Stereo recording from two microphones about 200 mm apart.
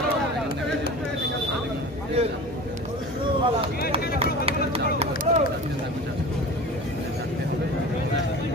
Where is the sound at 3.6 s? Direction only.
30° right (ahead or behind).